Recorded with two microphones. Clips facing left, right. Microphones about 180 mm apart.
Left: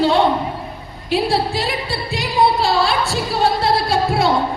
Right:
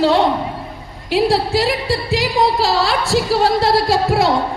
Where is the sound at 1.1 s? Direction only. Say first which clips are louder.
Right 3 dB; 90° right.